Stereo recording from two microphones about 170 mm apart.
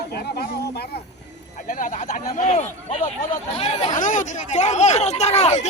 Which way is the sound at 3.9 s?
50° left (ahead or behind).